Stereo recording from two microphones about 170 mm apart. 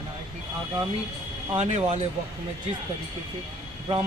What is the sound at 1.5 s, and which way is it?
Speech, 40° right (ahead or behind).